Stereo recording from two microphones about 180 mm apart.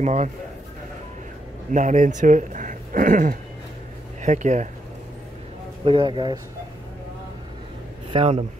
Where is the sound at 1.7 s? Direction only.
45° right (ahead or behind).